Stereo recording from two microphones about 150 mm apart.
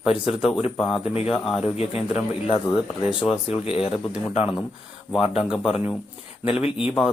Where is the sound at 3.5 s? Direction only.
40° left (ahead or behind).